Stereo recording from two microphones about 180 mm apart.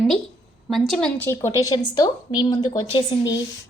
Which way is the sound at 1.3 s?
20° left (ahead or behind).